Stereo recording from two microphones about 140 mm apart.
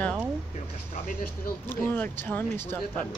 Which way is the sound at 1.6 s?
15° left (ahead or behind).